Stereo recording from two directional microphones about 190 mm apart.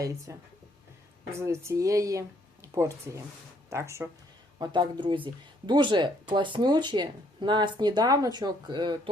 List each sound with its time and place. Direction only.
0.3 s speech: 15° right (ahead or behind)